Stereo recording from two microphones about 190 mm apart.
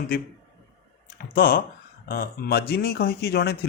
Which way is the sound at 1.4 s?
50° left (ahead or behind).